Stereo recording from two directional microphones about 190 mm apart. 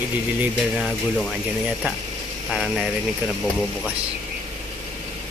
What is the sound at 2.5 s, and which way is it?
Speech, centre (ahead or behind).